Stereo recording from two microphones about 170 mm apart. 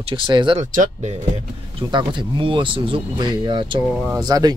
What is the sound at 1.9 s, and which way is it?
Speech, 30° right (ahead or behind).